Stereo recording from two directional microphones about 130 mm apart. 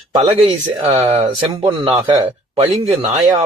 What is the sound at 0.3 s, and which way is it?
Speech, 45° right (ahead or behind).